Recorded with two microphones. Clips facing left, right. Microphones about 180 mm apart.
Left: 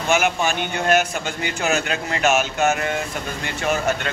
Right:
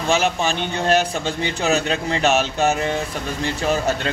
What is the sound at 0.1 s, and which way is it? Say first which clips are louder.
A man's voice: even; 30° right (ahead or behind).